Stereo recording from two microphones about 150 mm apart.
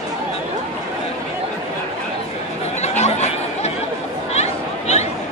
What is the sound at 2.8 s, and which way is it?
Chatter, 45° left (ahead or behind).